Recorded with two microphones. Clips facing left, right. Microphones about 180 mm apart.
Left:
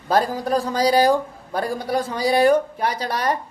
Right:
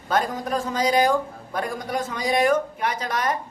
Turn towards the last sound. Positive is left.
turn(degrees=35)  # may be behind; listen again after turning